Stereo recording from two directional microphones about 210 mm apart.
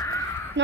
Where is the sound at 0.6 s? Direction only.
60° right (ahead or behind).